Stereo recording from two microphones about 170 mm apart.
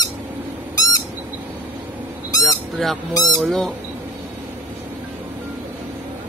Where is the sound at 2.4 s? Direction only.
Centre (ahead or behind).